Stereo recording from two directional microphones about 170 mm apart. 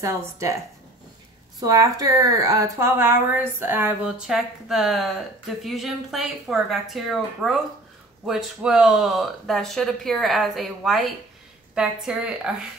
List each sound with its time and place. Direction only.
0.0 s speech: 20° right (ahead or behind)
1.6 s speech: 20° right (ahead or behind); by 12.4 s 5° right (ahead or behind)